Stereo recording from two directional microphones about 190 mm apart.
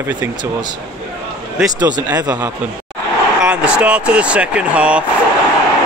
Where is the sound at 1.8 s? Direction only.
20° right (ahead or behind).